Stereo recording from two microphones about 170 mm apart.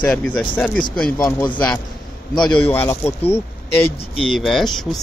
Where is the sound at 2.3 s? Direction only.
25° left (ahead or behind).